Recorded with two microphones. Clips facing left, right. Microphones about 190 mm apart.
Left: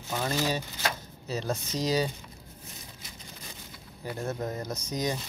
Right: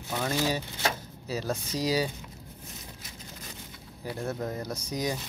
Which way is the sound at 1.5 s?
5° right (ahead or behind).